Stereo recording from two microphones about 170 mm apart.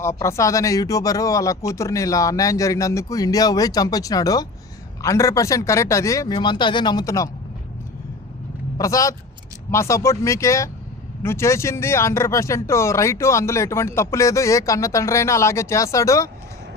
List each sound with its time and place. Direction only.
0.0 s speech: 15° left (ahead or behind)
8.8 s speech: 20° left (ahead or behind)